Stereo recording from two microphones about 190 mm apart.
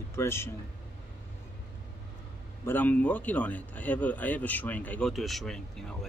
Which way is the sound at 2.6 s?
10° left (ahead or behind).